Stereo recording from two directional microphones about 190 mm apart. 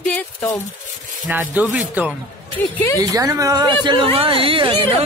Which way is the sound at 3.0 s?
20° right (ahead or behind).